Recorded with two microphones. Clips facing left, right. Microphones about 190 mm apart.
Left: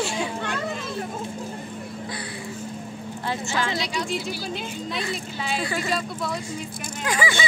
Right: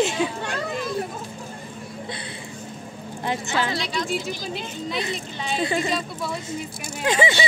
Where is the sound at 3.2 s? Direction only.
20° right (ahead or behind).